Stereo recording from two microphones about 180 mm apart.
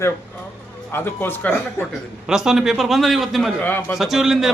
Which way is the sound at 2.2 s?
5° right (ahead or behind).